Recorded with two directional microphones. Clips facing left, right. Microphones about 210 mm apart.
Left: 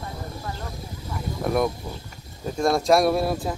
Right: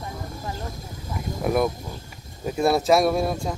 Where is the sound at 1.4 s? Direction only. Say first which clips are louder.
Right 1 dB; 5° right (ahead or behind).